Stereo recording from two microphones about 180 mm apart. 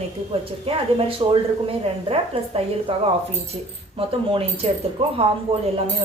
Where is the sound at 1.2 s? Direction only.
25° right (ahead or behind).